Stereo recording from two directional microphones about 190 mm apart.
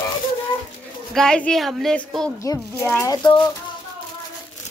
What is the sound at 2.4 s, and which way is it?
Speech, 15° left (ahead or behind).